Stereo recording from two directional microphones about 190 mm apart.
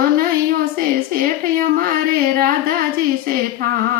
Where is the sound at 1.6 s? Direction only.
50° right (ahead or behind).